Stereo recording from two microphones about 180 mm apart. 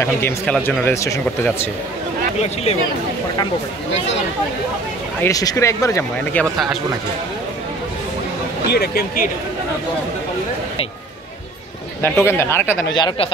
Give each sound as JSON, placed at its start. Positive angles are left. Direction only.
{"t": 0.0, "sound": "speech", "side_deg": 10}
{"t": 5.2, "sound": "speech", "side_deg": 20}
{"t": 6.4, "sound": "speech", "side_deg": 0}
{"t": 8.6, "sound": "speech", "side_deg": 65}
{"t": 12.0, "sound": "speech", "side_deg": 15}
{"t": 12.9, "sound": "speech", "side_deg": 25}